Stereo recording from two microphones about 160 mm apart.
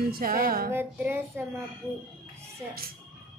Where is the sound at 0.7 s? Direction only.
15° right (ahead or behind).